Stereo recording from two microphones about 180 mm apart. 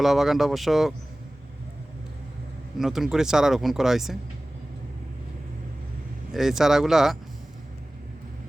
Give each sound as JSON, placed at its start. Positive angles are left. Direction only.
{"t": 0.0, "sound": "speech", "side_deg": 0}
{"t": 2.7, "sound": "speech", "side_deg": 0}
{"t": 6.3, "sound": "speech", "side_deg": 0}